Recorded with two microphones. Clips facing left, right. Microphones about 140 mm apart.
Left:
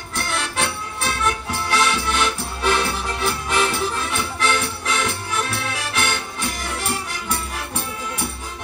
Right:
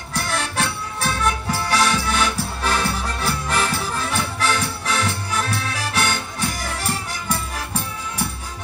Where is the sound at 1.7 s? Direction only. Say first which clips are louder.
Even; 40° right (ahead or behind).